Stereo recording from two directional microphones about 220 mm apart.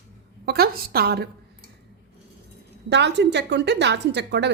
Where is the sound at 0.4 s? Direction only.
45° right (ahead or behind).